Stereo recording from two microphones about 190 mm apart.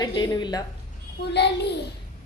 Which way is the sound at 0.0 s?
20° left (ahead or behind).